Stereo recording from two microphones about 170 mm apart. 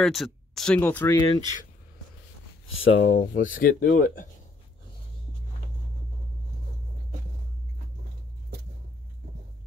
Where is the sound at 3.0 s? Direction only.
50° left (ahead or behind).